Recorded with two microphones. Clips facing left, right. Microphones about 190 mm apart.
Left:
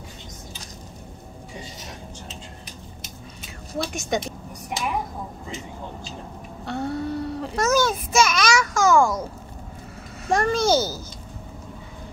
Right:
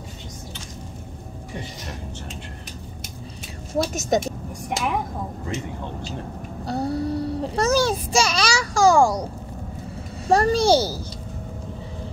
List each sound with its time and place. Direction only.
3.8 s speech: 40° right (ahead or behind)
6.6 s a child's voice: 35° right (ahead or behind)